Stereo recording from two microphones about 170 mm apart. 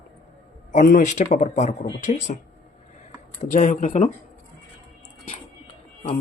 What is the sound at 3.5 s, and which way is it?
Speech, 45° left (ahead or behind).